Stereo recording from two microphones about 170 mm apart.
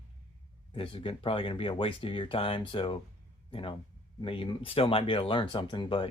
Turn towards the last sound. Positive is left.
turn(degrees=30)  # may be behind; listen again after turning